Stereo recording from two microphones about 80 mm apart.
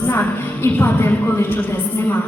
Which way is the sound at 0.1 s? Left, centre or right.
Left.